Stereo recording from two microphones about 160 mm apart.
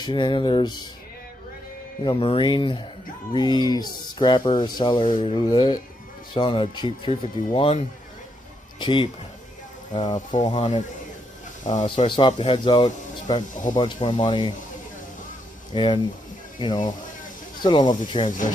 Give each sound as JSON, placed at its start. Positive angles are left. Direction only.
{"t": 0.0, "sound": "speech", "side_deg": 30}
{"t": 2.0, "sound": "speech", "side_deg": 35}
{"t": 10.4, "sound": "speech", "side_deg": 45}
{"t": 11.8, "sound": "speech", "side_deg": 35}
{"t": 13.5, "sound": "speech", "side_deg": 55}
{"t": 14.0, "sound": "speech", "side_deg": 30}
{"t": 15.7, "sound": "speech", "side_deg": 30}